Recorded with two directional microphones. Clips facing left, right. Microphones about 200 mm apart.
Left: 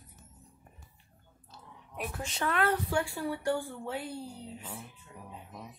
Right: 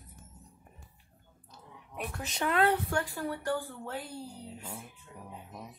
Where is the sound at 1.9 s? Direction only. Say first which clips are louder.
Left 1 dB; centre (ahead or behind).